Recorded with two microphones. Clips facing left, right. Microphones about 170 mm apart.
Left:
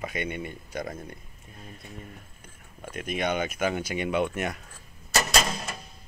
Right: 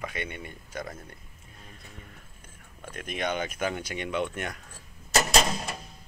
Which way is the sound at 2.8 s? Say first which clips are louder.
Left 3 dB; 10° left (ahead or behind).